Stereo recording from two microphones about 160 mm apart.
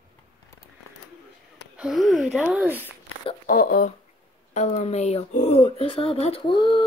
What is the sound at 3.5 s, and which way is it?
Speech, 60° left (ahead or behind).